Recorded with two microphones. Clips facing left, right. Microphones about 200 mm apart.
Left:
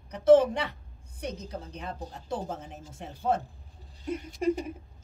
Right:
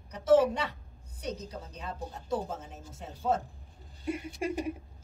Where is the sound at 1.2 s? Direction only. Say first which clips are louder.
Left 1 dB; 55° left (ahead or behind).